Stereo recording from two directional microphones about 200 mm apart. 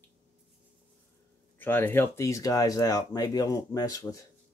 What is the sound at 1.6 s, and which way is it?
Speech, 10° left (ahead or behind).